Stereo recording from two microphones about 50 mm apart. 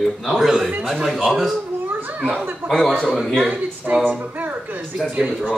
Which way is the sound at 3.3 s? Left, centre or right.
Right.